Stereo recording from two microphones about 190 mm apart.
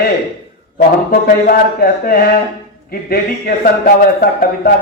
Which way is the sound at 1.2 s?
50° left (ahead or behind).